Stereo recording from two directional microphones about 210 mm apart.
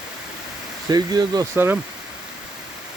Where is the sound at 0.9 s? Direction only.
20° right (ahead or behind).